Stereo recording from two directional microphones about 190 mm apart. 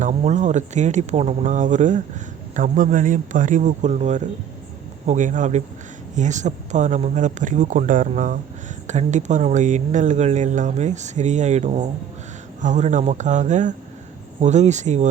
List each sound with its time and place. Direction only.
0.0 s a man's voice: 40° right (ahead or behind)